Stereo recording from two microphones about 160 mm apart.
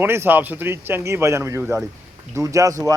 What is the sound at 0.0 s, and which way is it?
A man's voice, 15° right (ahead or behind).